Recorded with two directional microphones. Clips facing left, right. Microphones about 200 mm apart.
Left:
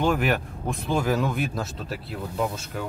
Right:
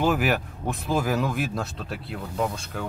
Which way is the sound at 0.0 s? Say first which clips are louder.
Even; 5° right (ahead or behind).